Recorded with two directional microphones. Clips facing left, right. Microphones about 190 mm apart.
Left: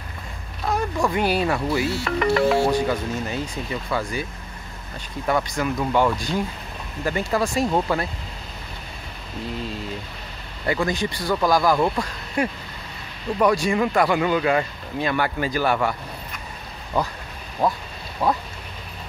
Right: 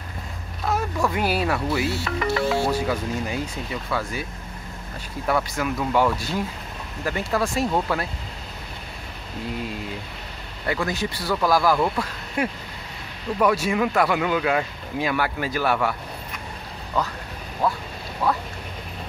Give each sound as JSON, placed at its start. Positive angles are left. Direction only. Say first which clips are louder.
{"t": 0.7, "sound": "a sound", "louder": "left 1 dB", "side_deg": -5}
{"t": 1.1, "sound": "speech", "louder": "left 3 dB", "side_deg": -5}
{"t": 2.0, "sound": "speech", "louder": "left 4 dB", "side_deg": 60}
{"t": 2.7, "sound": "speech", "louder": "left 2 dB", "side_deg": -5}
{"t": 10.7, "sound": "speech", "louder": "left 2 dB", "side_deg": 0}
{"t": 17.0, "sound": "speech", "louder": "left 1 dB", "side_deg": 10}